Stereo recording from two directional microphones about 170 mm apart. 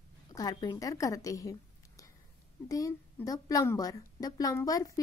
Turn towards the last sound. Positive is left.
turn(degrees=20)  # may be behind; listen again after turning